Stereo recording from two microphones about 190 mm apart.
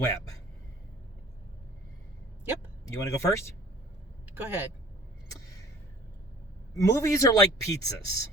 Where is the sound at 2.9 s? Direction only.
15° left (ahead or behind).